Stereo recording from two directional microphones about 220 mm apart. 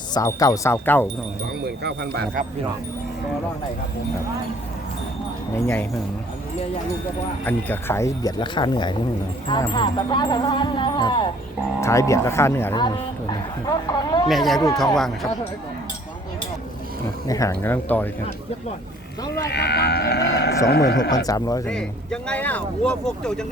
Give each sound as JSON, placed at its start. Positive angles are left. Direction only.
{"t": 0.1, "sound": "speech", "side_deg": 15}
{"t": 1.6, "sound": "speech", "side_deg": -50}
{"t": 5.6, "sound": "speech", "side_deg": 5}
{"t": 7.4, "sound": "speech", "side_deg": 10}
{"t": 14.3, "sound": "speech", "side_deg": 0}
{"t": 17.2, "sound": "speech", "side_deg": 15}
{"t": 19.5, "sound": "speech", "side_deg": 45}
{"t": 21.2, "sound": "speech", "side_deg": 15}
{"t": 21.7, "sound": "speech", "side_deg": 5}